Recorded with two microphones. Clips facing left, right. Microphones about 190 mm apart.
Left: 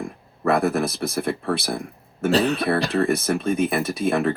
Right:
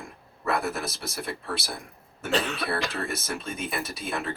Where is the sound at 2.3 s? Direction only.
35° left (ahead or behind).